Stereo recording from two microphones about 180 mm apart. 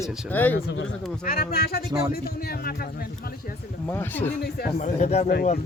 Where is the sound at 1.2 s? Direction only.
55° left (ahead or behind).